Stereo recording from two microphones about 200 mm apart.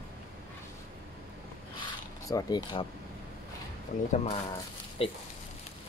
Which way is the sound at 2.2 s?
20° left (ahead or behind).